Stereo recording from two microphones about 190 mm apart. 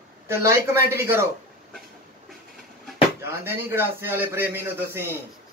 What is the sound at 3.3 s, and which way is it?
Speech, 10° right (ahead or behind).